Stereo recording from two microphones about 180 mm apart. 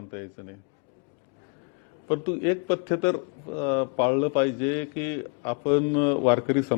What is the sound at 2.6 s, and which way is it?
A man's voice, 15° left (ahead or behind).